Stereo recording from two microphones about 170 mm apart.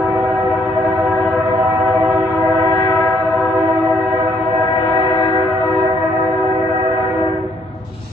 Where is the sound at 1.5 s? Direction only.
25° right (ahead or behind).